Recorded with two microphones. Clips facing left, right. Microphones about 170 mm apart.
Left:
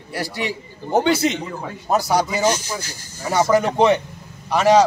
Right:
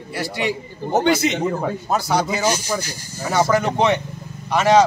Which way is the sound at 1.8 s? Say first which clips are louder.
Left 4 dB; 10° left (ahead or behind).